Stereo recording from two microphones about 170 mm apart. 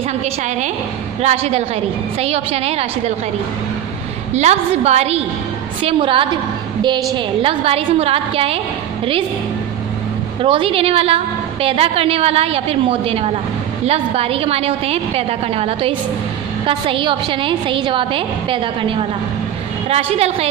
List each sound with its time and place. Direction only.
1.2 s a woman's voice: 40° right (ahead or behind)
4.3 s a woman's voice: 40° right (ahead or behind)
7.4 s a woman's voice: 35° right (ahead or behind)
10.4 s a woman's voice: 30° right (ahead or behind)